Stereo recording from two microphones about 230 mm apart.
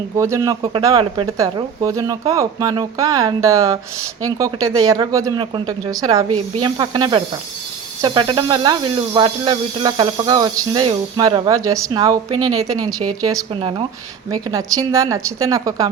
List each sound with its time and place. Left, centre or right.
0.2 s speech: centre
12.5 s speech: right
13.2 s speech: centre